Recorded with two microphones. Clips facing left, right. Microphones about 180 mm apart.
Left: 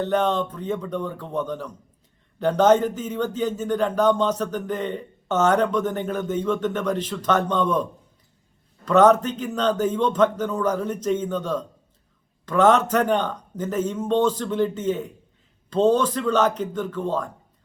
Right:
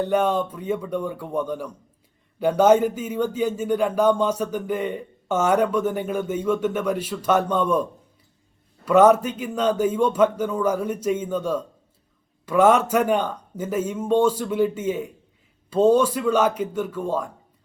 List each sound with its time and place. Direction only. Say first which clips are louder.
0.0 s speech: right 1 dB; 10° right (ahead or behind)